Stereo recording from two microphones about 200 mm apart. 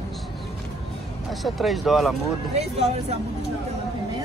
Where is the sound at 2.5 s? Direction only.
30° right (ahead or behind).